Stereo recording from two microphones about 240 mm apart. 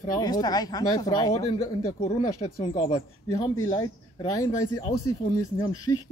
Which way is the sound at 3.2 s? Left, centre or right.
Centre.